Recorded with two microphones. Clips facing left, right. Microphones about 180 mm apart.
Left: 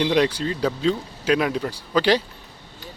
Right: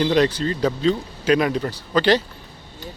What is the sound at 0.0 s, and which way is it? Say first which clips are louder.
Speech: right 2 dB; 10° left (ahead or behind).